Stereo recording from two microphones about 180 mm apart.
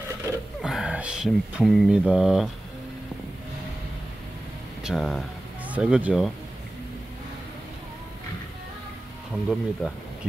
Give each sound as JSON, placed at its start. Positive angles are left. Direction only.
{"t": 0.6, "sound": "speech", "side_deg": -5}
{"t": 4.8, "sound": "speech", "side_deg": 0}
{"t": 9.3, "sound": "speech", "side_deg": -5}